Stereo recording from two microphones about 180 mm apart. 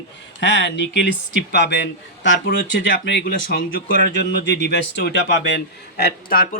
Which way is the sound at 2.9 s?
65° left (ahead or behind).